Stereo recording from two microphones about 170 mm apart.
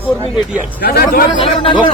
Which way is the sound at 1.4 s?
30° left (ahead or behind).